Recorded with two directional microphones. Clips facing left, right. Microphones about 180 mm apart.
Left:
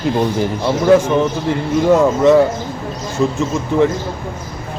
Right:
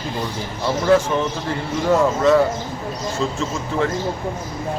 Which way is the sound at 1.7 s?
20° left (ahead or behind).